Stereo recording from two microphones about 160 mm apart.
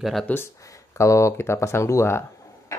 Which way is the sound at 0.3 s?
15° left (ahead or behind).